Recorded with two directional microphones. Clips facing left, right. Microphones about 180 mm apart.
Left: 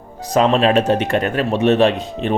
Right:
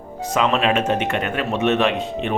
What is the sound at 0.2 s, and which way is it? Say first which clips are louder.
A man's voice: left 5 dB; 35° left (ahead or behind).